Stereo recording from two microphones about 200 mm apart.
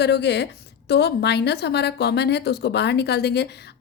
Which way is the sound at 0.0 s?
60° left (ahead or behind).